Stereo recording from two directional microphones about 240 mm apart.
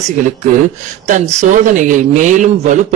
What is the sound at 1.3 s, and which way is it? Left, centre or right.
Speech, right.